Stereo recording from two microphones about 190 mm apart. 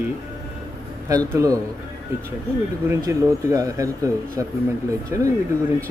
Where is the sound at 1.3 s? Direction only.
15° right (ahead or behind).